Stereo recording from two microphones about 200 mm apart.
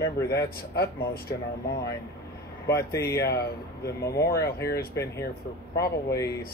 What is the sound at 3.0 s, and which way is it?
Speech, 50° left (ahead or behind).